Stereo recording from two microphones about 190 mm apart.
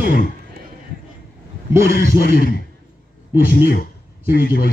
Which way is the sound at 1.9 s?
45° left (ahead or behind).